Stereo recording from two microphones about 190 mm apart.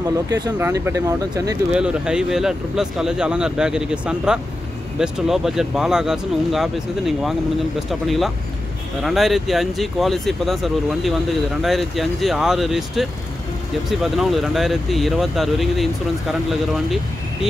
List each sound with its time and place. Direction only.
0.3 s speech: 15° right (ahead or behind)
1.7 s speech: 5° right (ahead or behind)